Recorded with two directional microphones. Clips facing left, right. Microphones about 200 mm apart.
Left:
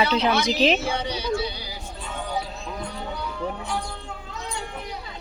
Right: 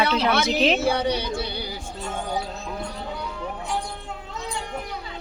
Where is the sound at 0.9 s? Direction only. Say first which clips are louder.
Right 5 dB; 60° right (ahead or behind).